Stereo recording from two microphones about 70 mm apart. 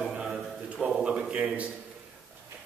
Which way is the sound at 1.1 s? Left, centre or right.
Centre.